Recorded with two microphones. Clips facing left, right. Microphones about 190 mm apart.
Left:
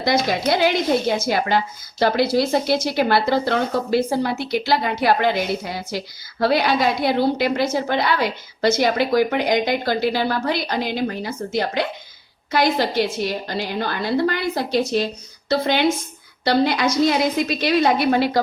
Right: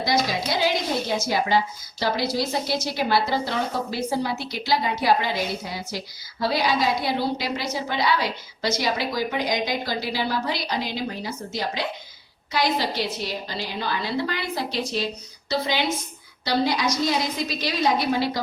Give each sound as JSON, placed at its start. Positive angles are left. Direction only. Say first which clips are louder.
{"t": 0.0, "sound": "a woman's voice", "louder": "left 4 dB", "side_deg": 55}